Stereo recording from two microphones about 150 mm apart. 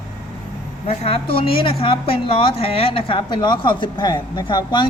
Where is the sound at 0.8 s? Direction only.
40° left (ahead or behind).